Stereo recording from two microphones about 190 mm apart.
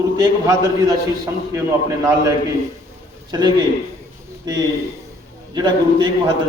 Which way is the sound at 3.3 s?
20° right (ahead or behind).